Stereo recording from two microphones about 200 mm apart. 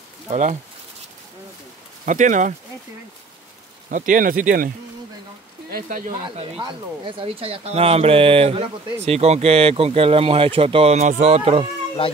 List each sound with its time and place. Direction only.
0.3 s speech: 35° right (ahead or behind)
2.0 s speech: 40° right (ahead or behind)
3.9 s speech: 40° right (ahead or behind)
6.2 s speech: 25° right (ahead or behind)